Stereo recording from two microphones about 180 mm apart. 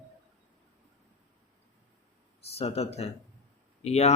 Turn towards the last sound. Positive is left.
turn(degrees=35)  # may be behind; listen again after turning